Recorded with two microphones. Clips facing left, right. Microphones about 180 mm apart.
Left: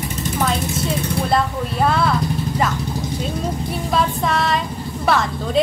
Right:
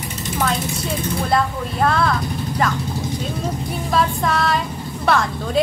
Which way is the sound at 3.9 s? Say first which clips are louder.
Right 1 dB; centre (ahead or behind).